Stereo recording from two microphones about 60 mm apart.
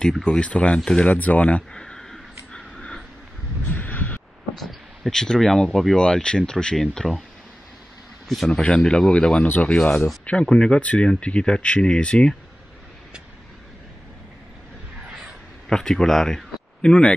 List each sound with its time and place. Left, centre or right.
0.2 s speech: centre
1.0 s speech: left
1.7 s a sound: centre
3.6 s a sound: left
4.6 s speech: centre
8.5 s speech: centre
15.0 s crow: centre
15.7 s speech: centre